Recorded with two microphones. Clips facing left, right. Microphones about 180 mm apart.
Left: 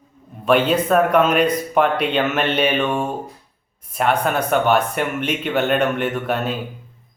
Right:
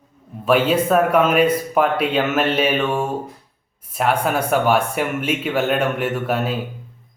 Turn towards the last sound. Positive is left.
turn(degrees=-5)  # may be behind; listen again after turning